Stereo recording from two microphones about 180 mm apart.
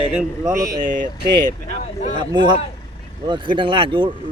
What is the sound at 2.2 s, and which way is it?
Speech, 25° right (ahead or behind).